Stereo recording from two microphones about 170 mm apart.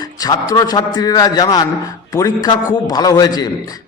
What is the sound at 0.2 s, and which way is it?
A man's voice, 20° left (ahead or behind).